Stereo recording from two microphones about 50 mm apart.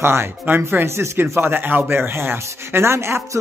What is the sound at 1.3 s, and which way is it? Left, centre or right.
Speech, right.